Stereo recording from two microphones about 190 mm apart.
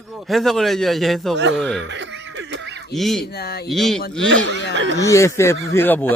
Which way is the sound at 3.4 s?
55° left (ahead or behind).